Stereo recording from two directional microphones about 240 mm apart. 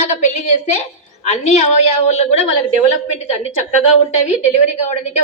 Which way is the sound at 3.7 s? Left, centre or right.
Left.